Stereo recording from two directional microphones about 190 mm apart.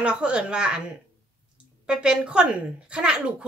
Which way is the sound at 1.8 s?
5° right (ahead or behind).